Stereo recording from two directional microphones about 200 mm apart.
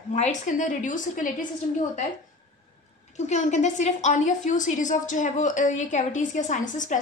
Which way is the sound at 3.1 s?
35° left (ahead or behind).